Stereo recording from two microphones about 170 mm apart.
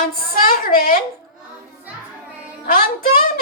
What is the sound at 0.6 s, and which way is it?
Speech, 55° left (ahead or behind).